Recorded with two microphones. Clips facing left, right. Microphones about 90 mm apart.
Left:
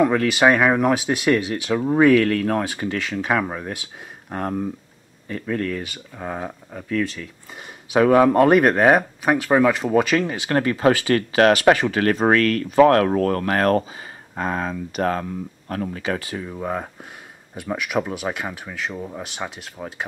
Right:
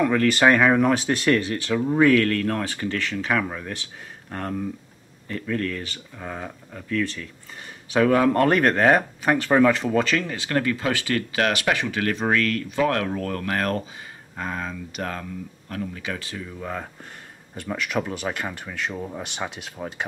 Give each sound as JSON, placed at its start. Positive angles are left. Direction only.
{"t": 0.0, "sound": "speech", "side_deg": 10}
{"t": 10.8, "sound": "speech", "side_deg": 40}
{"t": 16.0, "sound": "speech", "side_deg": 30}
{"t": 17.6, "sound": "speech", "side_deg": 10}